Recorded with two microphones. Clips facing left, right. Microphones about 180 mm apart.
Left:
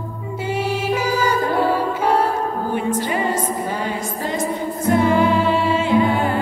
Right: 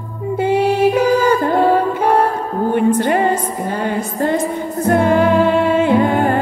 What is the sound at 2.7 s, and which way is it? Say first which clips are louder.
Music: right 9 dB; 60° right (ahead or behind).